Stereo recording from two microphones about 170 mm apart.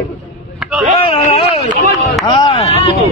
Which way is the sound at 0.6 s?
5° right (ahead or behind).